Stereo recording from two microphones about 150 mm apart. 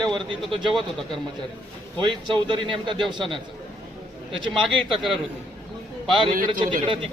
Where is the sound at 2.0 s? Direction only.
35° right (ahead or behind).